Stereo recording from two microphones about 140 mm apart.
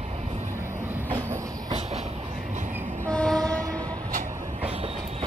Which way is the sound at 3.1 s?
5° left (ahead or behind).